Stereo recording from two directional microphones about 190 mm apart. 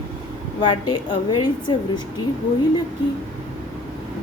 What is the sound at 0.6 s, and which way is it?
A woman's voice, 25° left (ahead or behind).